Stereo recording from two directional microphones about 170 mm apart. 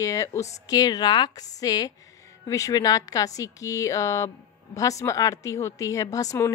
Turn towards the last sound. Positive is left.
turn(degrees=20)  # may be behind; listen again after turning